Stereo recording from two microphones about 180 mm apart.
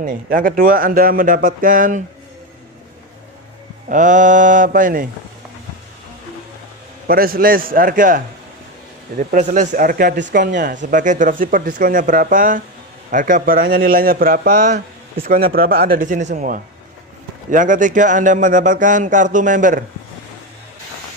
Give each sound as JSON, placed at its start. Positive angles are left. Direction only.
{"t": 0.0, "sound": "speech", "side_deg": -50}
{"t": 3.9, "sound": "speech", "side_deg": -45}
{"t": 7.1, "sound": "speech", "side_deg": -55}